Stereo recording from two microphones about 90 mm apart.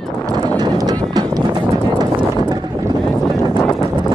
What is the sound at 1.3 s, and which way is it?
Run, 50° right (ahead or behind).